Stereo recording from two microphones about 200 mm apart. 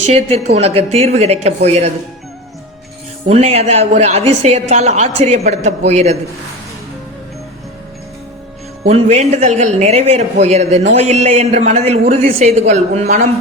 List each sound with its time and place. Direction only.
0.1 s a man's voice: 30° right (ahead or behind)
3.2 s a man's voice: 30° right (ahead or behind)
8.9 s a man's voice: 35° right (ahead or behind)